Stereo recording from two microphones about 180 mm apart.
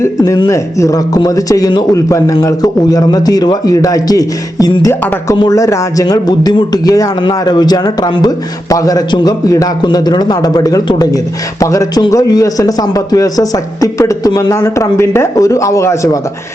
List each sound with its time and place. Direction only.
0.0 s a man's voice: 20° left (ahead or behind)